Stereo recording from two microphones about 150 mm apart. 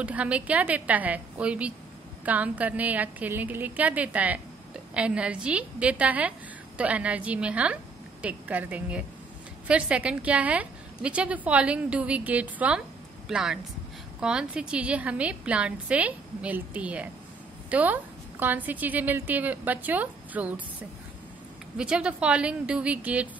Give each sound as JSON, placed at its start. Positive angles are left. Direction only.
{"t": 0.0, "sound": "a woman's voice", "side_deg": -10}
{"t": 21.7, "sound": "a woman's voice", "side_deg": -5}